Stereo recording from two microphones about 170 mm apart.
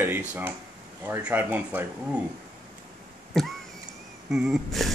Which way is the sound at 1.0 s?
10° right (ahead or behind).